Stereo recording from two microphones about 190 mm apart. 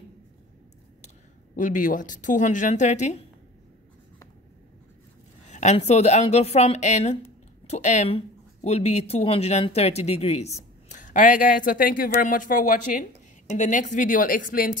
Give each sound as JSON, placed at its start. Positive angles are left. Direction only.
{"t": 1.6, "sound": "speech", "side_deg": 45}
{"t": 5.5, "sound": "a woman's voice", "side_deg": 40}